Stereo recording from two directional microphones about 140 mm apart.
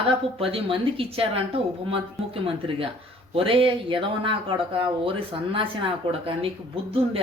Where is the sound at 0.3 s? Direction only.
40° right (ahead or behind).